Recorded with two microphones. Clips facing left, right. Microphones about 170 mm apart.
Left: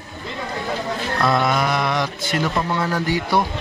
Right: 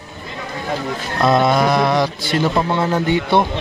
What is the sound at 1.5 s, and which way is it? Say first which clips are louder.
Speech: right 5 dB; 35° right (ahead or behind).